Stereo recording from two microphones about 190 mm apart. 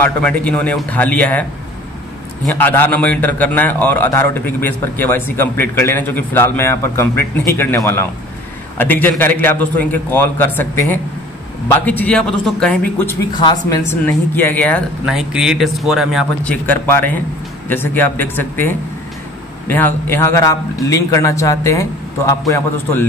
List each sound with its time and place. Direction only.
0.0 s a man's voice: 10° left (ahead or behind)
2.5 s a man's voice: 10° left (ahead or behind)
13.3 s a man's voice: 25° left (ahead or behind)
15.0 s speech: centre (ahead or behind)
16.6 s a man's voice: 10° left (ahead or behind)